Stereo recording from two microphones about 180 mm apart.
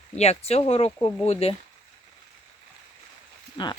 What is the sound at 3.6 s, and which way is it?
Speech, 25° left (ahead or behind).